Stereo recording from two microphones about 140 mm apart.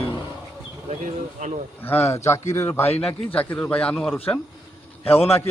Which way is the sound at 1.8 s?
15° left (ahead or behind).